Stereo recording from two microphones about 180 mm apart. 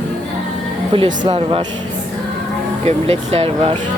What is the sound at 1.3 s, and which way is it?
Speech, 30° right (ahead or behind).